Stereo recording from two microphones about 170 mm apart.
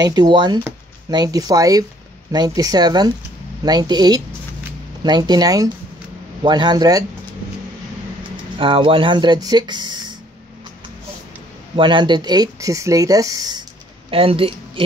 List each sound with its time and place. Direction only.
0.0 s speech: 25° right (ahead or behind)
8.5 s speech: 30° right (ahead or behind)
11.7 s speech: 30° right (ahead or behind)
14.1 s speech: 35° right (ahead or behind)